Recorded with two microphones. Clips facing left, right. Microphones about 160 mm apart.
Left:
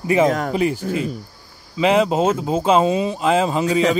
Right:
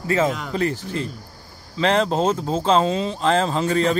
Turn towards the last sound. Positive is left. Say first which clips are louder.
# left 2 dB
turn(degrees=10)  # may be behind; listen again after turning